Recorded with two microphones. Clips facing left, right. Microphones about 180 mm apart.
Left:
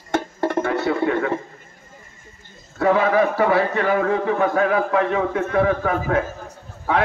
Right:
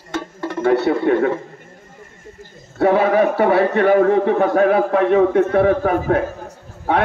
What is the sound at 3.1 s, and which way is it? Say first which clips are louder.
A man's voice: right 3 dB; 55° right (ahead or behind).